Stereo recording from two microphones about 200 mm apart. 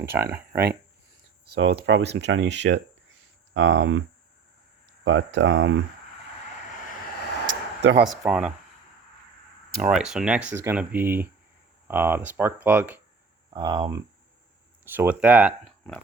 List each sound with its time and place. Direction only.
0.5 s speech: 55° right (ahead or behind)
5.0 s speech: 65° right (ahead or behind)
7.4 s a sound: 60° right (ahead or behind)
8.2 s speech: 5° right (ahead or behind)
9.8 s speech: 5° right (ahead or behind)
13.5 s speech: 20° right (ahead or behind)
14.8 s speech: 10° right (ahead or behind)